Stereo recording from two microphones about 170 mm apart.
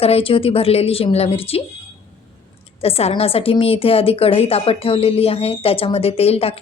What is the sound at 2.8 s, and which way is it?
A woman's voice, 35° left (ahead or behind).